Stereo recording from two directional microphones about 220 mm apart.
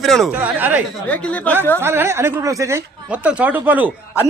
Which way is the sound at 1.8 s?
10° right (ahead or behind).